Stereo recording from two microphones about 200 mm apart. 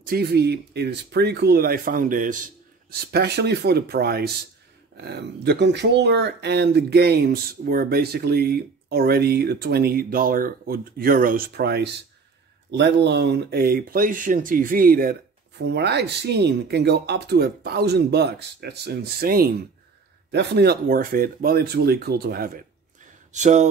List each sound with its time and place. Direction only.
0.0 s speech: 50° right (ahead or behind)
23.3 s speech: 35° right (ahead or behind)